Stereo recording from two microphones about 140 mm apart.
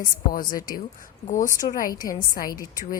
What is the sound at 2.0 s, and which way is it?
Speech, 90° left.